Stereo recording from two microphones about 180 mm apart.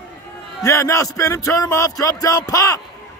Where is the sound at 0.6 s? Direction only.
15° left (ahead or behind).